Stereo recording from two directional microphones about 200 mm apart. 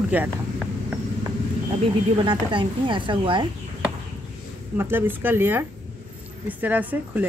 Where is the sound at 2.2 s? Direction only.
25° right (ahead or behind).